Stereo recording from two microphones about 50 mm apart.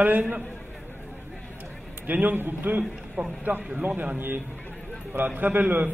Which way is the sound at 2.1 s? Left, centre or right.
Right.